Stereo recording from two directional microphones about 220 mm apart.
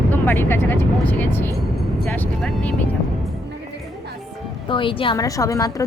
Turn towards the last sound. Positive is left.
turn(degrees=15)  # may be behind; listen again after turning